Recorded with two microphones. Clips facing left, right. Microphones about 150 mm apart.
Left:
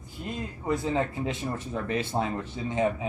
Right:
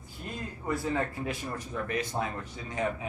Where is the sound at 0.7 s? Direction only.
20° left (ahead or behind).